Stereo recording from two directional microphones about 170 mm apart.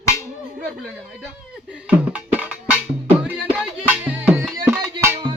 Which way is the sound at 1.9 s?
10° right (ahead or behind).